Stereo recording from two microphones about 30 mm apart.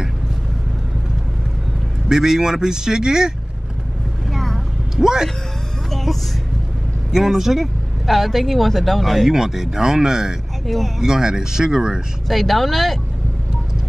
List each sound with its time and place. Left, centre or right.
2.0 s speech: centre
4.3 s vehicle: centre
5.0 s speech: right
5.9 s a sound: centre
7.2 s speech: centre
8.1 s speech: centre
9.3 s speech: centre
12.3 s speech: centre